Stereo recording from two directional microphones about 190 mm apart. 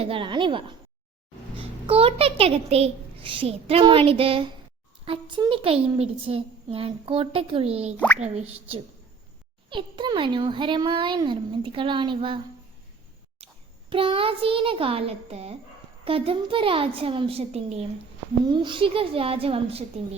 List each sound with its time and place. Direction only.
0.0 s a child's voice: 30° right (ahead or behind)
7.9 s speech: 10° left (ahead or behind)
8.2 s speech: 35° right (ahead or behind)
9.6 s a child's voice: 25° right (ahead or behind)
13.4 s a sound: 30° right (ahead or behind)
13.9 s a child's voice: 30° right (ahead or behind)